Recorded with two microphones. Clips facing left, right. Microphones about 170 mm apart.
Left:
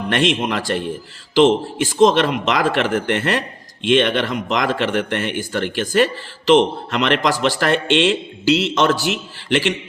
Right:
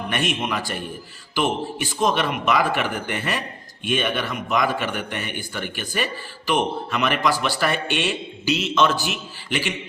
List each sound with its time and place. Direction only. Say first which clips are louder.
0.1 s speech: left 7 dB; 90° left
2.0 s speech: left 8 dB; 90° left
4.8 s speech: left 8 dB; 75° left (ahead or behind)